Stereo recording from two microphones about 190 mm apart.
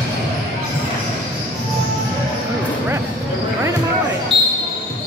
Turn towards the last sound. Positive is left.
turn(degrees=-30)  # may be behind; listen again after turning